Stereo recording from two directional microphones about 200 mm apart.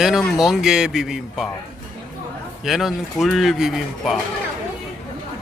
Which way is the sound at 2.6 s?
Centre (ahead or behind).